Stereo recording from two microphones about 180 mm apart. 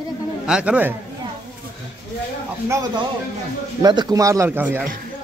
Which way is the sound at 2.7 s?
20° right (ahead or behind).